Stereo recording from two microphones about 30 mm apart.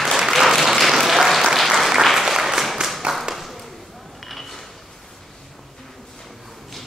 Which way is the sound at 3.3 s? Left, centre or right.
Centre.